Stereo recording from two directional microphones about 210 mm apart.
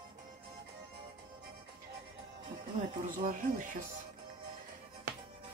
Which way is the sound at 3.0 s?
40° right (ahead or behind).